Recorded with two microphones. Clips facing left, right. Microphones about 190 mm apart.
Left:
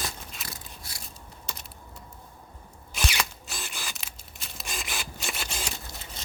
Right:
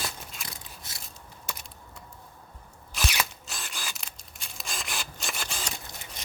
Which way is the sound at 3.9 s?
Centre (ahead or behind).